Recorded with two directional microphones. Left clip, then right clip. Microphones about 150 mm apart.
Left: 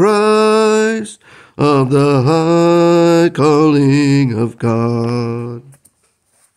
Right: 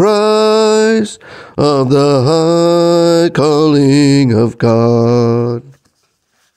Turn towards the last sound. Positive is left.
turn(degrees=-45)  # may be behind; listen again after turning